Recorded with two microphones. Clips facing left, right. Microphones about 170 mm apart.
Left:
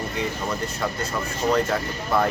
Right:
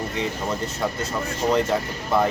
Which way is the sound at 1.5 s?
20° right (ahead or behind).